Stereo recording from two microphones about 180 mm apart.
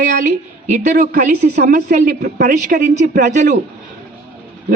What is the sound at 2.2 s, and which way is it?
A man's voice, 55° right (ahead or behind).